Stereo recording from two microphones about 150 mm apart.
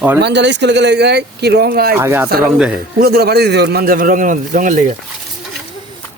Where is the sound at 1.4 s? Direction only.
90° right.